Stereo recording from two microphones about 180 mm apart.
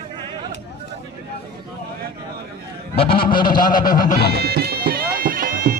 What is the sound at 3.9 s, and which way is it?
Speech, 50° left (ahead or behind).